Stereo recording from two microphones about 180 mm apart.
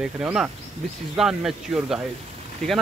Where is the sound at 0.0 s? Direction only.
5° right (ahead or behind).